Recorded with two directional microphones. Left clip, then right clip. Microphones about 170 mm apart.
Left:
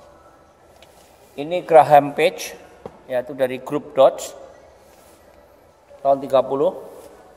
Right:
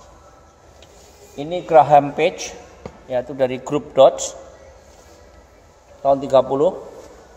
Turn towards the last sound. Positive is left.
turn(degrees=-20)  # may be behind; listen again after turning